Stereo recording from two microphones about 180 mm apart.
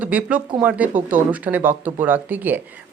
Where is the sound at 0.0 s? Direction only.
10° right (ahead or behind).